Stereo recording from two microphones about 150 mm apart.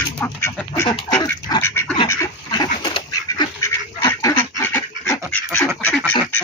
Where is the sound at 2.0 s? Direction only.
20° left (ahead or behind).